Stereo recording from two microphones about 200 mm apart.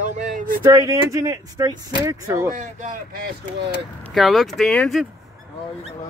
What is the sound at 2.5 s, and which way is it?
Speech, 40° right (ahead or behind).